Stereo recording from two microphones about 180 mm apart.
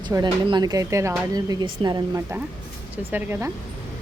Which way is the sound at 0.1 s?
25° right (ahead or behind).